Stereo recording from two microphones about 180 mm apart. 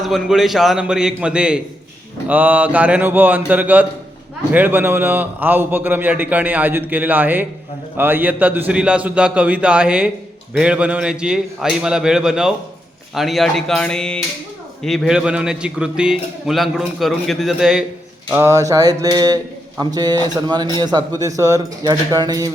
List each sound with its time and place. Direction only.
0.0 s a man's voice: centre (ahead or behind)
18.3 s speech: 15° right (ahead or behind)